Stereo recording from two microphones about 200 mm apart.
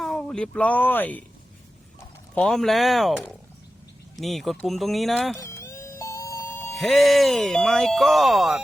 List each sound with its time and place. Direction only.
0.0 s speech: centre (ahead or behind)
5.4 s insect: 15° left (ahead or behind)
6.7 s speech: centre (ahead or behind)